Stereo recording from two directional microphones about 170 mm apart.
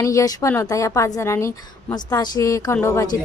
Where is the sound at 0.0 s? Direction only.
20° left (ahead or behind).